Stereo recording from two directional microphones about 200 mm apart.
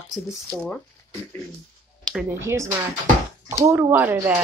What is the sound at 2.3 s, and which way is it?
Speech, 15° right (ahead or behind).